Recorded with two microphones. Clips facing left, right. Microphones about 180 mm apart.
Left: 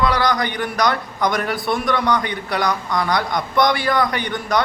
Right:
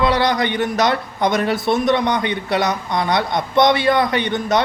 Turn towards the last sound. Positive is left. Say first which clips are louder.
# right 3 dB
turn(degrees=-25)  # may be behind; listen again after turning